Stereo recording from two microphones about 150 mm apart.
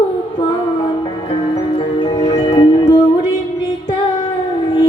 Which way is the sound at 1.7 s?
35° left (ahead or behind).